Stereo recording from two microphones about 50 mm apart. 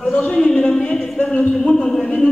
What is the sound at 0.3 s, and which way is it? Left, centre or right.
Music, centre.